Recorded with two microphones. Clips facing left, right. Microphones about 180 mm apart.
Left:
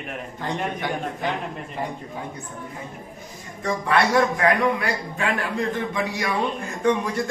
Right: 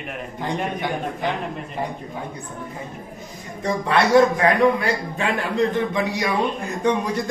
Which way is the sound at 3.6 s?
20° right (ahead or behind).